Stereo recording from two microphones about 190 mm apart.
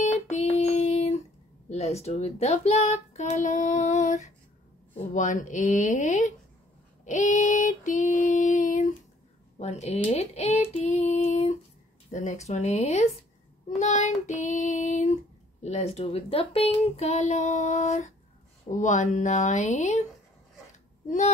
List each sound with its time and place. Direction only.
0.3 s child singing: 35° left (ahead or behind)
1.7 s speech: 35° left (ahead or behind)
7.1 s female singing: 40° left (ahead or behind)
9.6 s speech: 35° left (ahead or behind)
10.0 s female singing: 35° left (ahead or behind)
12.1 s speech: 40° left (ahead or behind)